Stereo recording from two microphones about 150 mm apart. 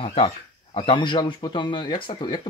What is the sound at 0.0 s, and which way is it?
Speech, 40° left (ahead or behind).